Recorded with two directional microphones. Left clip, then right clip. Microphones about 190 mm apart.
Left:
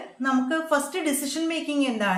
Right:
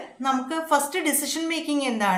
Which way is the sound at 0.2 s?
25° right (ahead or behind).